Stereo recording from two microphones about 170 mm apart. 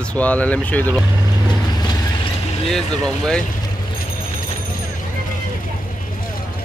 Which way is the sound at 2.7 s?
5° left (ahead or behind).